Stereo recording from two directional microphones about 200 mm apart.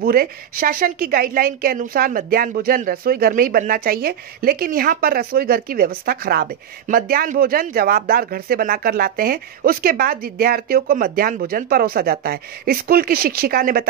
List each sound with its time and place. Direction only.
0.0 s a woman's voice: 45° right (ahead or behind)